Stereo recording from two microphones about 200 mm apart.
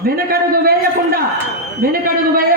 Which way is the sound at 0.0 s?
50° right (ahead or behind).